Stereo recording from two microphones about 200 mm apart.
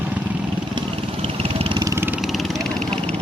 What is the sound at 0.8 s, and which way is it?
Vehicle, 25° right (ahead or behind).